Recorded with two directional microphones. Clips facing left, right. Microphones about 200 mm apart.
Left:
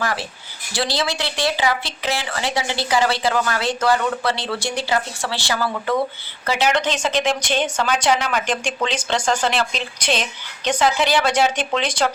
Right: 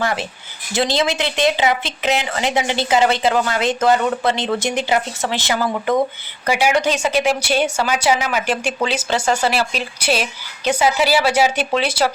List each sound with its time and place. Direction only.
0.0 s a woman's voice: 20° right (ahead or behind)